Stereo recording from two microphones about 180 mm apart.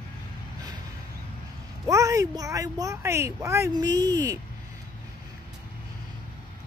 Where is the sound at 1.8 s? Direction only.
15° right (ahead or behind).